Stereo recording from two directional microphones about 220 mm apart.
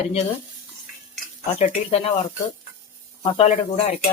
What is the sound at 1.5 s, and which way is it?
Speech, 30° left (ahead or behind).